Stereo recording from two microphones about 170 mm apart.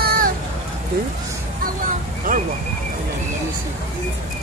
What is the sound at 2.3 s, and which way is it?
Vehicle, 55° right (ahead or behind).